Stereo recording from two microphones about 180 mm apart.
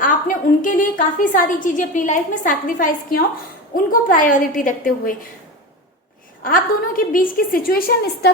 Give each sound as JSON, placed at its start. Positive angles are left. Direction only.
{"t": 0.0, "sound": "a woman's voice", "side_deg": 50}
{"t": 6.4, "sound": "a woman's voice", "side_deg": 50}